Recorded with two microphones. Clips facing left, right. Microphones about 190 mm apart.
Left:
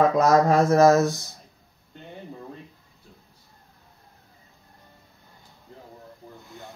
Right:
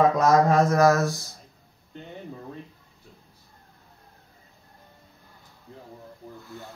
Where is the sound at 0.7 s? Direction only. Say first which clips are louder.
Left 3 dB; 20° left (ahead or behind).